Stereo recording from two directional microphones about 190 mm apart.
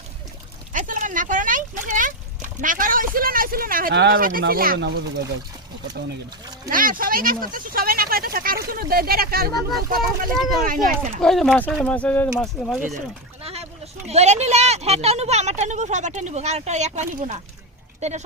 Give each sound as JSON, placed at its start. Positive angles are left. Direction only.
{"t": 0.7, "sound": "a sound", "side_deg": -45}
{"t": 2.6, "sound": "speech", "side_deg": -45}
{"t": 6.7, "sound": "speech", "side_deg": -45}
{"t": 11.2, "sound": "speech", "side_deg": 0}
{"t": 14.1, "sound": "speech", "side_deg": -35}